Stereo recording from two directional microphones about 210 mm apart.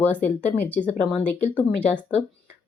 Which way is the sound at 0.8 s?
35° left (ahead or behind).